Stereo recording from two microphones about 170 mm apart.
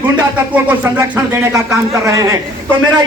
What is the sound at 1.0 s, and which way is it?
Speech, 20° right (ahead or behind).